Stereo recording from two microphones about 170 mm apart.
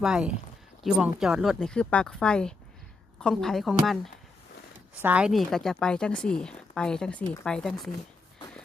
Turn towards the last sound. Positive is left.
turn(degrees=5)  # may be behind; listen again after turning